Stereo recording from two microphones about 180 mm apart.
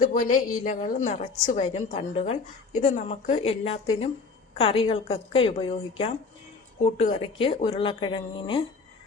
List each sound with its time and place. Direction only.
0.0 s a woman's voice: 50° left (ahead or behind); by 8.6 s 25° left (ahead or behind)